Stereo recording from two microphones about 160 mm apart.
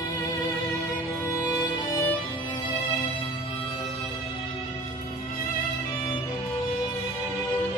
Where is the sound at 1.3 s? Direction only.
20° left (ahead or behind).